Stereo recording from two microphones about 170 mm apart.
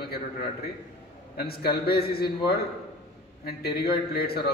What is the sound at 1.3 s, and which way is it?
Speech, 65° left (ahead or behind).